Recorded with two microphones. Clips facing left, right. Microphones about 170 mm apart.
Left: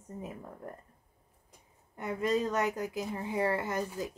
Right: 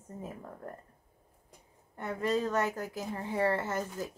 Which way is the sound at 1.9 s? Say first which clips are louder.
Left 1 dB; 15° left (ahead or behind).